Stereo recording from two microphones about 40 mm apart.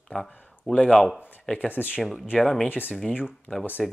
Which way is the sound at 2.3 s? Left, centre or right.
Centre.